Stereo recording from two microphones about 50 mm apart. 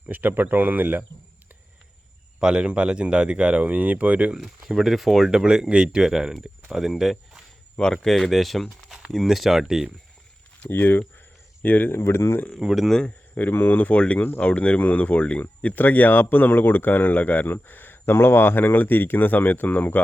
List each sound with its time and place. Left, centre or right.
0.1 s speech: right
2.4 s speech: centre
4.4 s speech: centre
7.9 s speech: centre
10.6 s speech: left
11.6 s speech: left
11.9 s speech: left
12.6 s speech: centre
13.1 s a sound: left
13.5 s speech: left